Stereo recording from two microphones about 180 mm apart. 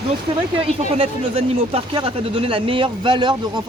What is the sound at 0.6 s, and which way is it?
Speech, 30° right (ahead or behind).